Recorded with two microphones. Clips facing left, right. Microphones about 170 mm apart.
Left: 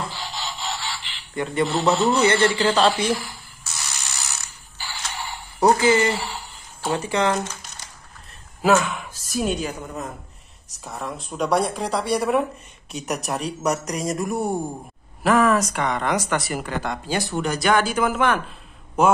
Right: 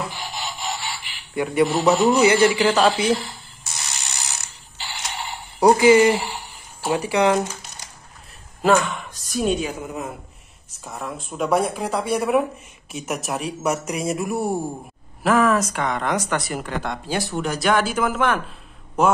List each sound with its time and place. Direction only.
0.2 s telephone: 15° right (ahead or behind)
3.1 s speech: 25° right (ahead or behind)
4.7 s a sound: 20° right (ahead or behind)
6.8 s speech: 10° right (ahead or behind)
8.6 s a woman's voice: 5° left (ahead or behind)